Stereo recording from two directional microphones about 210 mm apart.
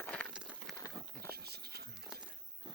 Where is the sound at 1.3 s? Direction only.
50° right (ahead or behind).